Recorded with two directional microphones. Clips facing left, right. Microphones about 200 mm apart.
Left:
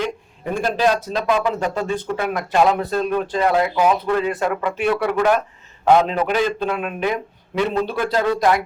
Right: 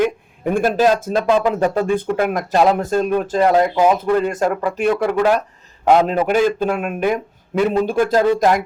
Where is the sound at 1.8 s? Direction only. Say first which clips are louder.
Right 5 dB; 50° right (ahead or behind).